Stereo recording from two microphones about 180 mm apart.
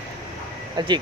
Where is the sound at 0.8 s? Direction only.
25° right (ahead or behind).